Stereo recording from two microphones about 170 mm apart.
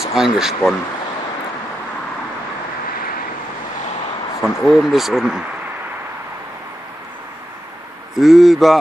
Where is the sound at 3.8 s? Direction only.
40° left (ahead or behind).